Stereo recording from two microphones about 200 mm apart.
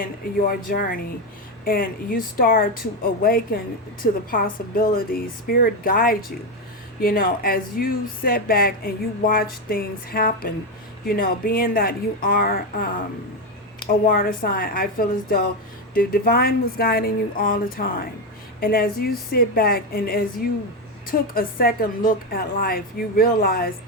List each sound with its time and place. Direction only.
0.0 s speech: 45° left (ahead or behind)
14.1 s speech: 45° left (ahead or behind)